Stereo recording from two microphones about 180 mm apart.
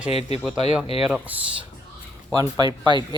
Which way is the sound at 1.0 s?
5° right (ahead or behind).